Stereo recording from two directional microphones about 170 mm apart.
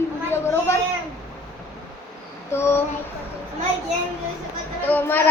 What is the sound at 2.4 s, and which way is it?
Speech, 15° left (ahead or behind).